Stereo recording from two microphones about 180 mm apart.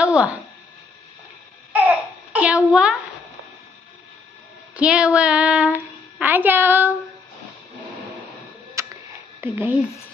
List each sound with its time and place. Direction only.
0.0 s speech: 5° right (ahead or behind)
1.7 s babbling: 10° right (ahead or behind)
4.7 s a woman's voice: 5° right (ahead or behind)
8.8 s a sound: 15° right (ahead or behind)
9.4 s a woman's voice: 10° right (ahead or behind)